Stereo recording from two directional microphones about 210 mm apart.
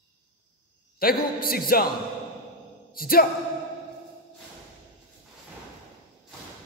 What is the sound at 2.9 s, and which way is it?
Speech, 45° left (ahead or behind).